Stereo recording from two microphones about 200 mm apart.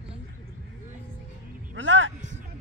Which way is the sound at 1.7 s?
65° right (ahead or behind).